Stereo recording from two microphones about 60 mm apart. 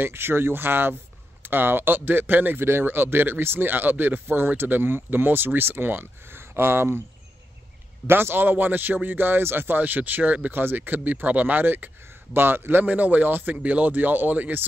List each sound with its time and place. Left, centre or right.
0.0 s speech: right
8.1 s speech: right